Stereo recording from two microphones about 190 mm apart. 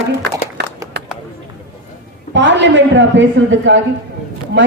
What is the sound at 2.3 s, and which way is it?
A woman's voice, 70° right (ahead or behind).